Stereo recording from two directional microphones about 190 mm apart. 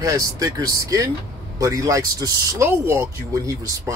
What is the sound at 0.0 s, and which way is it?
A man's voice, 20° right (ahead or behind).